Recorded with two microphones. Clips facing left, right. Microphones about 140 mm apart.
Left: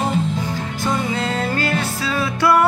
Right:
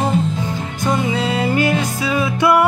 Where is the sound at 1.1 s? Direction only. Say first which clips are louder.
Right 3 dB; 10° right (ahead or behind).